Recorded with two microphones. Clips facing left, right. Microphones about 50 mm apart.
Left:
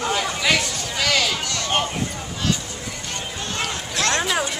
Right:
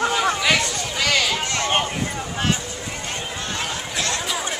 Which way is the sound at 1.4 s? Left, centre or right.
Right.